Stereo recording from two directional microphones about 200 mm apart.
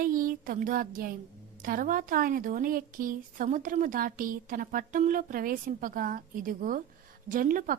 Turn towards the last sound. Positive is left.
turn(degrees=-45)  # may be behind; listen again after turning